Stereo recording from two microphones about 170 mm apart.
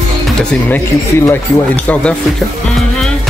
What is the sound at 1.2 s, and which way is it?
Speech, 10° left (ahead or behind).